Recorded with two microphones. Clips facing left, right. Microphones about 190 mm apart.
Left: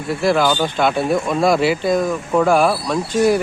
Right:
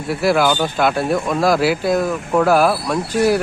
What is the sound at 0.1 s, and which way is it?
Speech, 5° right (ahead or behind).